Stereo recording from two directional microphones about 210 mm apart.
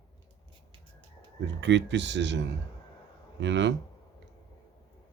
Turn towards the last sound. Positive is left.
turn(degrees=-60)  # may be behind; listen again after turning